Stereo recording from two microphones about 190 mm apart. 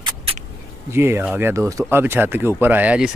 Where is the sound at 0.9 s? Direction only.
15° right (ahead or behind).